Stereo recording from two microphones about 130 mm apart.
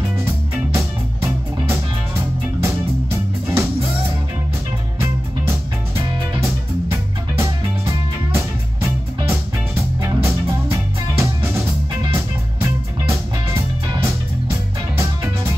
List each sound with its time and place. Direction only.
0.7 s music: 20° right (ahead or behind)
5.0 s music: 20° right (ahead or behind)